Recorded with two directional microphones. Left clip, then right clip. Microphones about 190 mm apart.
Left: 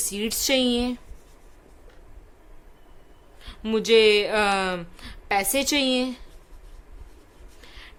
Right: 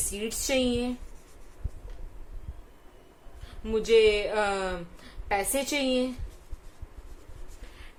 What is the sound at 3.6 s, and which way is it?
A woman's voice, 35° left (ahead or behind).